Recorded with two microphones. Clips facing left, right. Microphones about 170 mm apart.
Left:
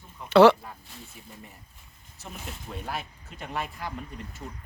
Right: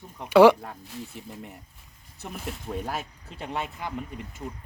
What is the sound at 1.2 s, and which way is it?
Speech, 70° right (ahead or behind).